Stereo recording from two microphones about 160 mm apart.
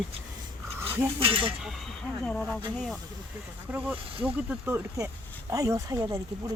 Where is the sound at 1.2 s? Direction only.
35° right (ahead or behind).